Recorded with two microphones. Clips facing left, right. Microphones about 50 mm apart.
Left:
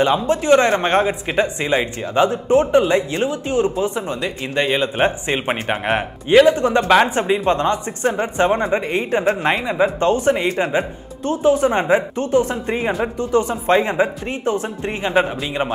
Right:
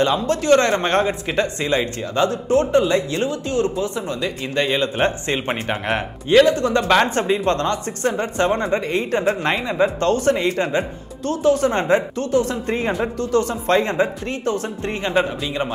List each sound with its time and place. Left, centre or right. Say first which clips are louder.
0.0 s a man's voice: left 2 dB; centre